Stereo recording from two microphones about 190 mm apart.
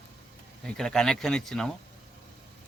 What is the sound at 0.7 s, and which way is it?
Speech, 5° left (ahead or behind).